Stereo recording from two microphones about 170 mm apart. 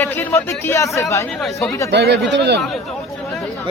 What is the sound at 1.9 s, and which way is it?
Speech, 80° right.